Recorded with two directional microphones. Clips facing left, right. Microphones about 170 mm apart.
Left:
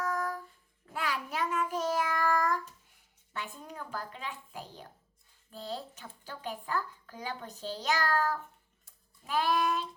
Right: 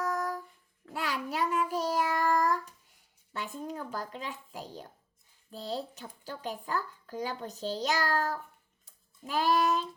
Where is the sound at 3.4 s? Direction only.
40° right (ahead or behind).